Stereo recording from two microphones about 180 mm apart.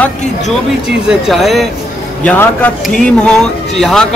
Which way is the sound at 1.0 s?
Centre (ahead or behind).